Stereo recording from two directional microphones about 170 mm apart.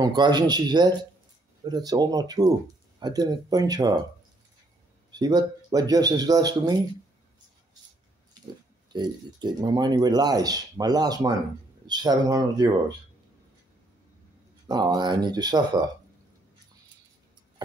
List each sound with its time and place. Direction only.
0.0 s speech: 25° right (ahead or behind)
5.1 s speech: 25° right (ahead or behind)
8.9 s speech: 25° right (ahead or behind)
14.7 s speech: 25° right (ahead or behind)